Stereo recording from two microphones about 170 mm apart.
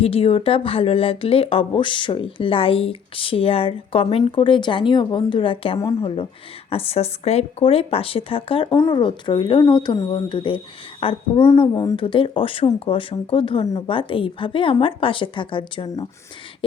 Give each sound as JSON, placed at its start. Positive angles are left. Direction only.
{"t": 0.0, "sound": "speech", "side_deg": 35}